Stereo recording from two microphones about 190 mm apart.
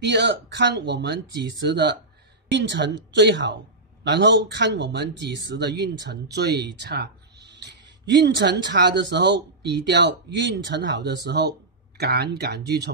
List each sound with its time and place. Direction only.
0.0 s a woman's voice: 65° right (ahead or behind)